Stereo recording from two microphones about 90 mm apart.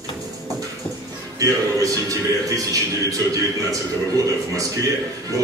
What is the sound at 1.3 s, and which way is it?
Speech, 40° right (ahead or behind).